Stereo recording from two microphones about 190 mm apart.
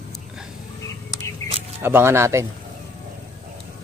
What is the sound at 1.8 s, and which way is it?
Speech, 10° right (ahead or behind).